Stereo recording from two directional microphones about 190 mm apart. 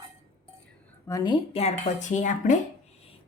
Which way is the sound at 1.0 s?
20° left (ahead or behind).